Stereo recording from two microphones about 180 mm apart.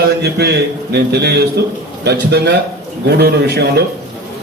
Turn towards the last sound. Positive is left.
turn(degrees=-65)  # may be behind; listen again after turning